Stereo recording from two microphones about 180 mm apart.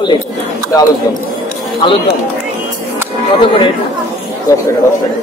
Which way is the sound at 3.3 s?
30° left (ahead or behind).